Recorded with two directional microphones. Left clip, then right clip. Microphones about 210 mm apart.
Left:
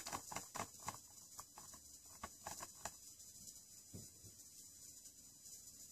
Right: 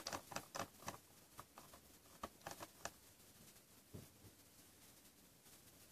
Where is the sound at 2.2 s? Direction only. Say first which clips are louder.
Even; 40° right (ahead or behind).